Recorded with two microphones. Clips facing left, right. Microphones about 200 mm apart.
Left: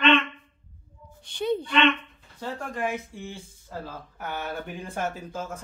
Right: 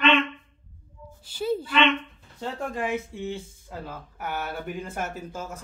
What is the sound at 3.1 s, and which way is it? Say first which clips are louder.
Speech: right 6 dB; 20° right (ahead or behind).